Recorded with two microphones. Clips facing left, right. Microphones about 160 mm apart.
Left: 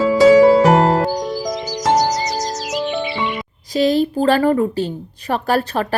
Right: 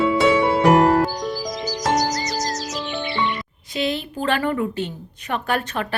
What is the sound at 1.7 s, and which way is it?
Music, centre (ahead or behind).